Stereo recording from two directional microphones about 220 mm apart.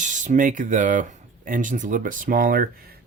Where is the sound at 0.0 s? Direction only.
35° right (ahead or behind).